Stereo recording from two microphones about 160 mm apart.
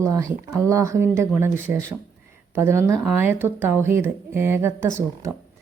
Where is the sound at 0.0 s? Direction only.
20° right (ahead or behind).